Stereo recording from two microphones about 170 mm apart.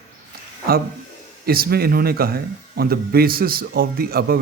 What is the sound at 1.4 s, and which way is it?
Speech, 65° right (ahead or behind).